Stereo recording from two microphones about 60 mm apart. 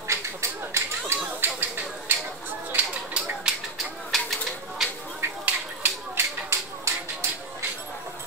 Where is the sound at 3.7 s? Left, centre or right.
Centre.